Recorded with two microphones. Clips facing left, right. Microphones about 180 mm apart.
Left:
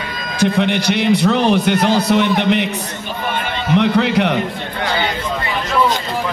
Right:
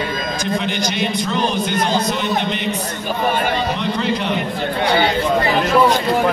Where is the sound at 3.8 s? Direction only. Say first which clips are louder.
Left 6 dB; 70° left (ahead or behind).